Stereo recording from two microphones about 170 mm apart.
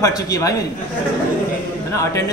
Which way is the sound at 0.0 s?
20° left (ahead or behind).